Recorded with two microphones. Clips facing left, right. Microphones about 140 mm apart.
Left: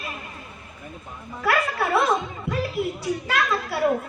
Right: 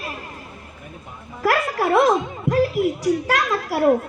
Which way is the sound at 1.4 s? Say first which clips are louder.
Right 3 dB; 40° right (ahead or behind).